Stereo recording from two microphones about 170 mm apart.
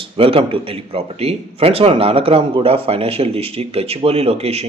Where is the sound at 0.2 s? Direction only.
35° right (ahead or behind).